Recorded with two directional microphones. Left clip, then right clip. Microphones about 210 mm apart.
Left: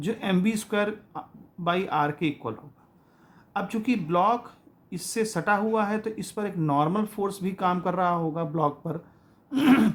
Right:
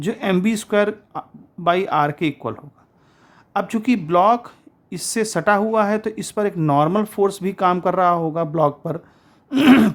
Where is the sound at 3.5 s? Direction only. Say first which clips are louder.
Right 7 dB; 40° right (ahead or behind).